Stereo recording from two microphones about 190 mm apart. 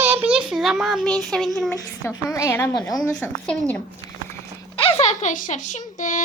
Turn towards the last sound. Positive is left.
turn(degrees=40)  # may be behind; listen again after turning